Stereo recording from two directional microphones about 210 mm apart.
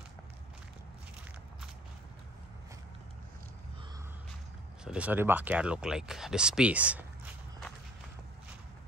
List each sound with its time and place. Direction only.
4.8 s speech: 5° right (ahead or behind)